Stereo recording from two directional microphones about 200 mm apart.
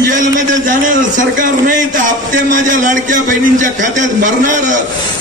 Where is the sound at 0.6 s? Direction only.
40° right (ahead or behind).